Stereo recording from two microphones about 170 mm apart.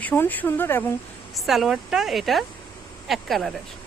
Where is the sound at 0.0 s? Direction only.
10° left (ahead or behind).